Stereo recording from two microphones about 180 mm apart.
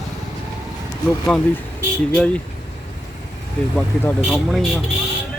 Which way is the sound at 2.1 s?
5° left (ahead or behind).